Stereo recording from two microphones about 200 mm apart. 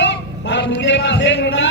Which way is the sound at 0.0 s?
60° left (ahead or behind).